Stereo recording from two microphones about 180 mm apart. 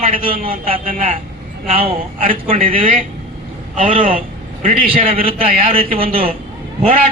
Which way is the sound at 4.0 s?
30° right (ahead or behind).